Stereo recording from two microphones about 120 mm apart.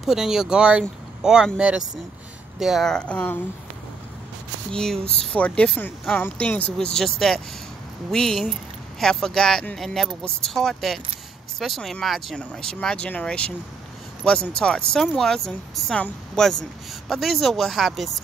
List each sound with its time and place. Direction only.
0.0 s speech: 5° right (ahead or behind)
4.6 s speech: 5° left (ahead or behind)
6.8 s speech: 5° left (ahead or behind)